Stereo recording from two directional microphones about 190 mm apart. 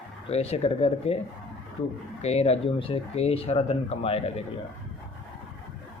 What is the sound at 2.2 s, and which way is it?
Speech, 35° left (ahead or behind).